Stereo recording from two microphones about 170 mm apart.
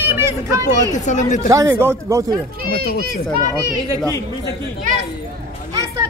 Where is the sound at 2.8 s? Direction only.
65° right (ahead or behind).